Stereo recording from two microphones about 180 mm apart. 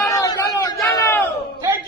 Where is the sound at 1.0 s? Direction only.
10° left (ahead or behind).